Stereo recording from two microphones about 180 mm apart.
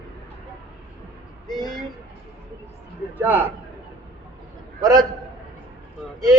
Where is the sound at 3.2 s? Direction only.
10° right (ahead or behind).